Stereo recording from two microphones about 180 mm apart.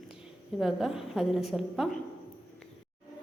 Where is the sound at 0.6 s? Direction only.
Centre (ahead or behind).